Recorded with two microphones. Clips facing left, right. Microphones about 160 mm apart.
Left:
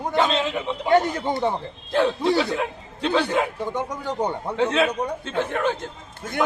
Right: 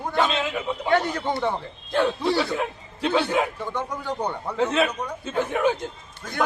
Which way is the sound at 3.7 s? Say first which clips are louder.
Left 1 dB; 20° left (ahead or behind).